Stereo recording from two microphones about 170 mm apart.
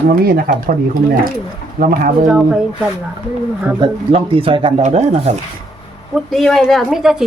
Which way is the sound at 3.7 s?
30° right (ahead or behind).